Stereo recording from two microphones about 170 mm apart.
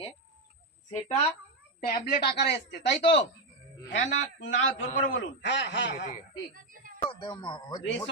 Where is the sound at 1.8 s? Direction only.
65° left (ahead or behind).